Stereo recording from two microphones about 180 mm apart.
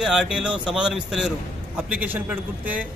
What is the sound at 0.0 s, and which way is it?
A man's voice, 5° right (ahead or behind).